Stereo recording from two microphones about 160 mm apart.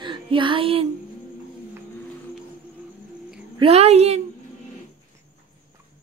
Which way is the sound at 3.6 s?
40° right (ahead or behind).